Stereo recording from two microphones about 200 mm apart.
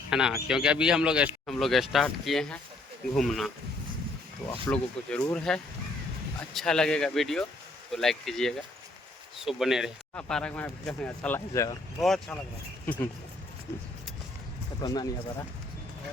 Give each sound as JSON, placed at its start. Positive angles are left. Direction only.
{"t": 0.1, "sound": "speech", "side_deg": -5}
{"t": 11.9, "sound": "speech", "side_deg": 0}
{"t": 14.8, "sound": "speech", "side_deg": 20}